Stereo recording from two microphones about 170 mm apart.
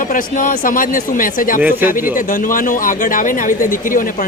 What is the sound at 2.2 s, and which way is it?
Speech, 50° left (ahead or behind).